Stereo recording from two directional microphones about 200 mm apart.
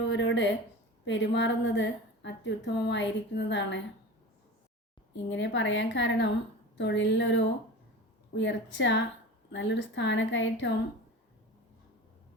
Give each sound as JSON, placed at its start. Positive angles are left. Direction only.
{"t": 0.1, "sound": "a sound", "side_deg": 65}
{"t": 1.0, "sound": "a woman's voice", "side_deg": 65}
{"t": 5.1, "sound": "a woman's voice", "side_deg": 60}